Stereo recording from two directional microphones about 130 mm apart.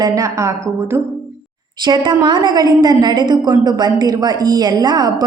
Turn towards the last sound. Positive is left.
turn(degrees=-30)  # may be behind; listen again after turning